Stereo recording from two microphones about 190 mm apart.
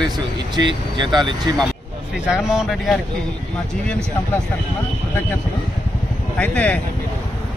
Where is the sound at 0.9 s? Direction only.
25° right (ahead or behind).